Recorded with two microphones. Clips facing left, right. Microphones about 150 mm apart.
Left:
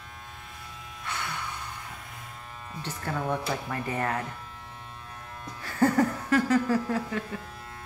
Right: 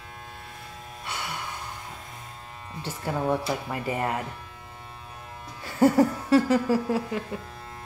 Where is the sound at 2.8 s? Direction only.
10° right (ahead or behind).